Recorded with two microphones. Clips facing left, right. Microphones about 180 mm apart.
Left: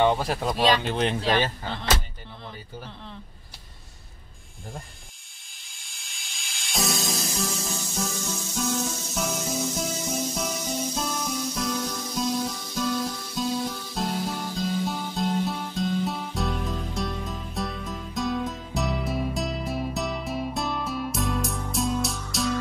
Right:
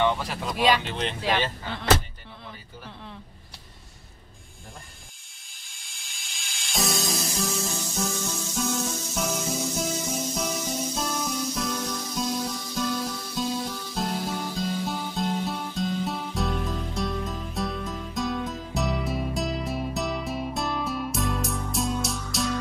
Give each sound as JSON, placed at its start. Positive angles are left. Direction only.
{"t": 0.0, "sound": "speech", "side_deg": 40}
{"t": 5.8, "sound": "music", "side_deg": 0}